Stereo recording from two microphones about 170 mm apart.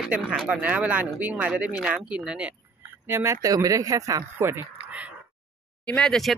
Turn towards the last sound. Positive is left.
turn(degrees=5)  # may be behind; listen again after turning